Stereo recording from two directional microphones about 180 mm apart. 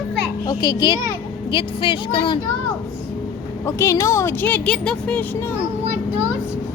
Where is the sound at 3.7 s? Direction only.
15° left (ahead or behind).